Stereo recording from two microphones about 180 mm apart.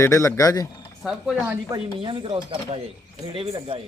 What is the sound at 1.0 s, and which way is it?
Speech, 5° right (ahead or behind).